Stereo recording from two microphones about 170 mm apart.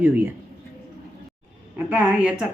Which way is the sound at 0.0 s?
10° right (ahead or behind).